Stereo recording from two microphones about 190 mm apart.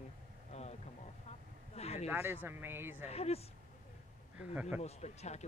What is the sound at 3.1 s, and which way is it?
Speech, 35° left (ahead or behind).